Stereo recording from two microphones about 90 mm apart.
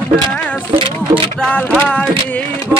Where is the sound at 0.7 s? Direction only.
80° right.